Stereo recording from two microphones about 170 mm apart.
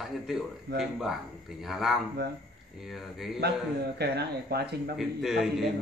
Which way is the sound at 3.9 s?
70° right (ahead or behind).